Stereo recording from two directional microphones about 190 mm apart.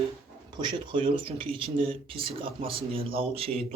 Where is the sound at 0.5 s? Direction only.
25° right (ahead or behind).